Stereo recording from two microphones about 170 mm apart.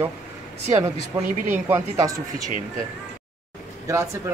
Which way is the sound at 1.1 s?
25° right (ahead or behind).